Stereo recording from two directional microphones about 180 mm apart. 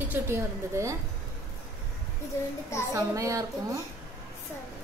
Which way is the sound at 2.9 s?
15° right (ahead or behind).